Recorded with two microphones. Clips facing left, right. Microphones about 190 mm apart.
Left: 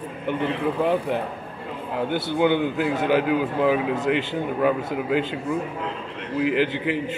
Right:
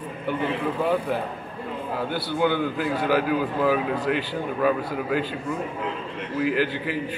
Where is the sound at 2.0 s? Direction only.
20° left (ahead or behind).